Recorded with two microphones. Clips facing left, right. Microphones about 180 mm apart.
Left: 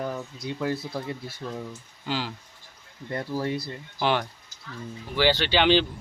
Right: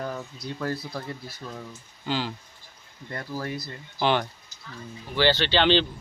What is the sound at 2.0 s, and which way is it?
Speech, 5° left (ahead or behind).